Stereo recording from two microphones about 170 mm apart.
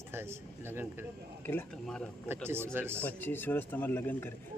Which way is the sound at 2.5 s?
15° right (ahead or behind).